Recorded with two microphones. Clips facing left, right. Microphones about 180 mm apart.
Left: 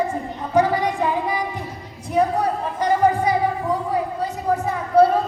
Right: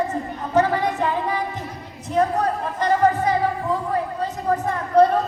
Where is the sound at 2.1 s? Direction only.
10° left (ahead or behind).